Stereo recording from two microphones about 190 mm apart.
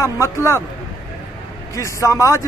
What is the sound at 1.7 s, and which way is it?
Speech, 15° left (ahead or behind).